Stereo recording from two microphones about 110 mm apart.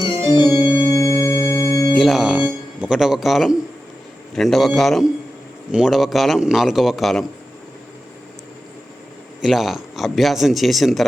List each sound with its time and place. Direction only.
0.3 s organ: 45° left (ahead or behind)
0.9 s organ: 25° left (ahead or behind)
1.9 s a man's voice: centre (ahead or behind)
9.4 s a man's voice: centre (ahead or behind)